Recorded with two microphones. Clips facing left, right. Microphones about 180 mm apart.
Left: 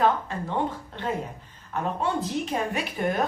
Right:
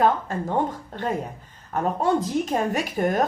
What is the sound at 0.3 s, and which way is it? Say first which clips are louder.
A woman's voice: right 3 dB; 45° right (ahead or behind).